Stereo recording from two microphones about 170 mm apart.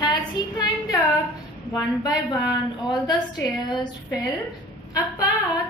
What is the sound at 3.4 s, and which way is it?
Speech, 25° left (ahead or behind).